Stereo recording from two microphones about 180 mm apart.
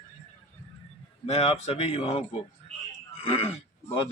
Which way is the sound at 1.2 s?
35° left (ahead or behind).